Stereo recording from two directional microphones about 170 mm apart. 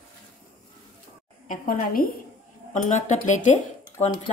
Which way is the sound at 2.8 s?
45° left (ahead or behind).